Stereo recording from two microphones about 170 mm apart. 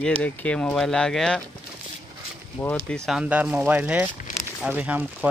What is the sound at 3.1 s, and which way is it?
Speech, 5° right (ahead or behind).